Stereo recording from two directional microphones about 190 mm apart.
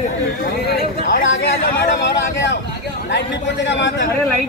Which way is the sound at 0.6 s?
50° left (ahead or behind).